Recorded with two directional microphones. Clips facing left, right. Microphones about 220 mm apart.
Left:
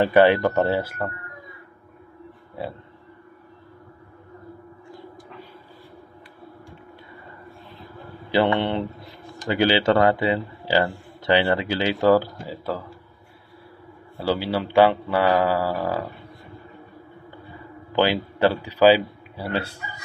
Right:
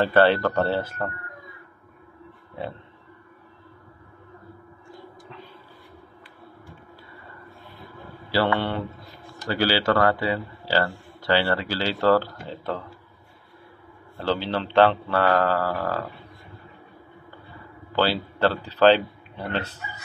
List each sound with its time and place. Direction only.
0.0 s a man's voice: 15° left (ahead or behind)
2.6 s speech: centre (ahead or behind)
8.3 s a man's voice: 20° left (ahead or behind)
14.1 s a man's voice: 10° left (ahead or behind)
17.9 s a man's voice: 15° left (ahead or behind)